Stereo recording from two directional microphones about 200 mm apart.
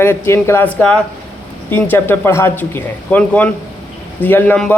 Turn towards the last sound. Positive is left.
turn(degrees=5)  # may be behind; listen again after turning